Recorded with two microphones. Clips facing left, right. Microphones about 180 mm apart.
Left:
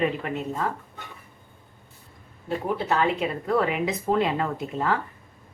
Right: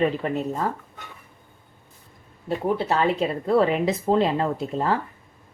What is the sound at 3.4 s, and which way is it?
Speech, 30° right (ahead or behind).